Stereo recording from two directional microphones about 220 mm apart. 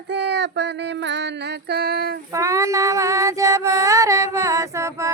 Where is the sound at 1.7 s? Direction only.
45° right (ahead or behind).